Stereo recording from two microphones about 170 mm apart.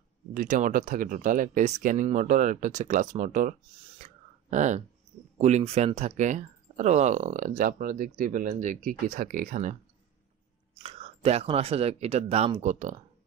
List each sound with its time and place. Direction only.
0.3 s speech: 50° right (ahead or behind)
4.0 s a sound: 45° right (ahead or behind)
5.4 s speech: 40° right (ahead or behind)
10.7 s speech: 35° right (ahead or behind)